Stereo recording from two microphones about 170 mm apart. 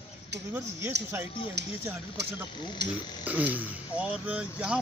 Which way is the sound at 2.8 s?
90° right.